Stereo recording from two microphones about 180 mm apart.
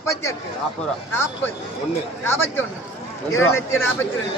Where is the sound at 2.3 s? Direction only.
10° left (ahead or behind).